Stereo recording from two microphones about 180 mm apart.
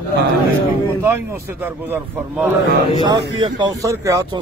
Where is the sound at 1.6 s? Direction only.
10° right (ahead or behind).